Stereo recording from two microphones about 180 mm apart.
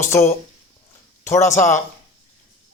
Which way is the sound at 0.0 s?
15° left (ahead or behind).